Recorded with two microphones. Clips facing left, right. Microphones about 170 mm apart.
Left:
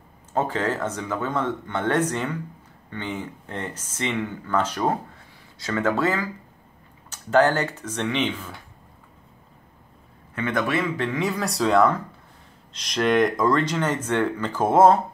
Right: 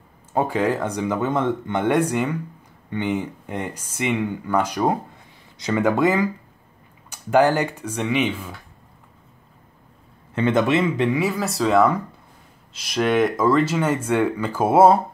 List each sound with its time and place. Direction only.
0.3 s speech: 10° right (ahead or behind)
10.3 s speech: 25° right (ahead or behind)
11.2 s speech: centre (ahead or behind)